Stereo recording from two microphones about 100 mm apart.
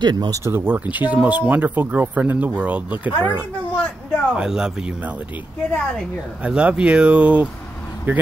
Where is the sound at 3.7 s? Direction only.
15° left (ahead or behind).